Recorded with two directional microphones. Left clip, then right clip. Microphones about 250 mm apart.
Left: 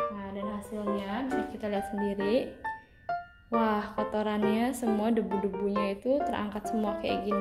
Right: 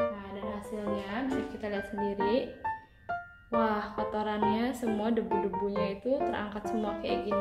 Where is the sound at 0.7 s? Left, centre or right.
Left.